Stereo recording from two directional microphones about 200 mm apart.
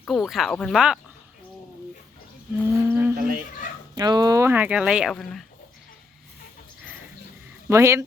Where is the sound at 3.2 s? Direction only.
45° right (ahead or behind).